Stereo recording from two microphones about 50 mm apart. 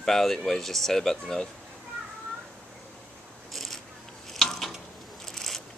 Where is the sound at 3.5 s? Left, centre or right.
Centre.